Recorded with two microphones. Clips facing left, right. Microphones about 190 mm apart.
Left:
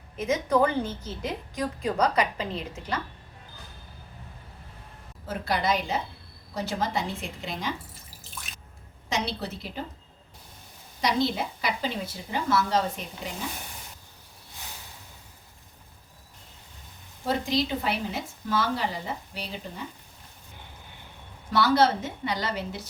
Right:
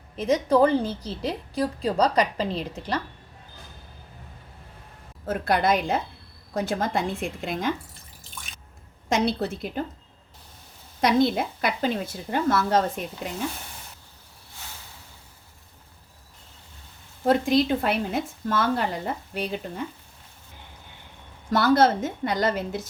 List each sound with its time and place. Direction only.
0.2 s a woman's voice: 30° right (ahead or behind)
5.3 s a woman's voice: 55° right (ahead or behind)
8.2 s drip: centre (ahead or behind)
9.0 s a woman's voice: 50° right (ahead or behind)
11.0 s a woman's voice: 55° right (ahead or behind)
17.2 s a woman's voice: 55° right (ahead or behind)
21.5 s a woman's voice: 50° right (ahead or behind)